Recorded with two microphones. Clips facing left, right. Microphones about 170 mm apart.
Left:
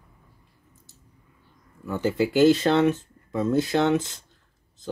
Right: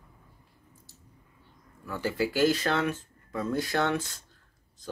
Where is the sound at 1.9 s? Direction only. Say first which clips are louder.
Left 5 dB; 20° left (ahead or behind).